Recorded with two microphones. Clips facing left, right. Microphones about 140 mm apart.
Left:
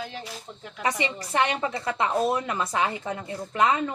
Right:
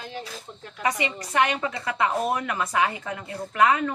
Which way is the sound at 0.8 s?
30° left (ahead or behind).